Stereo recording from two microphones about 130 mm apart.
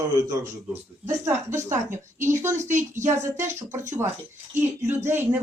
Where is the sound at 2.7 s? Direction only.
70° right (ahead or behind).